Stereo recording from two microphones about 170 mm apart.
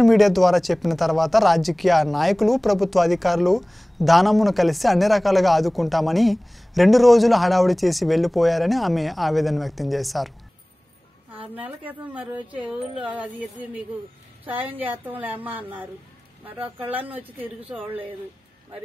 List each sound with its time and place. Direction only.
0.0 s speech: centre (ahead or behind)
11.5 s speech: 10° right (ahead or behind)
16.8 s speech: 10° right (ahead or behind)